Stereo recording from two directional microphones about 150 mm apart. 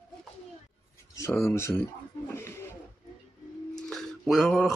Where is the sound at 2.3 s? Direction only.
15° left (ahead or behind).